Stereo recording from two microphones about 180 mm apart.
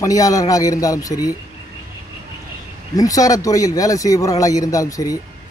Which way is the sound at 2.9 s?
20° left (ahead or behind).